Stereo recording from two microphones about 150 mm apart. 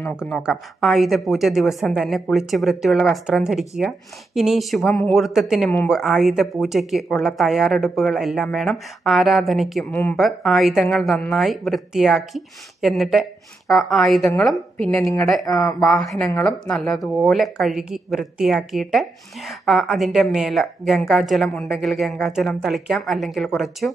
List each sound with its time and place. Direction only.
0.3 s a woman's voice: 5° right (ahead or behind)
15.4 s speech: 20° left (ahead or behind)
15.9 s speech: 5° left (ahead or behind)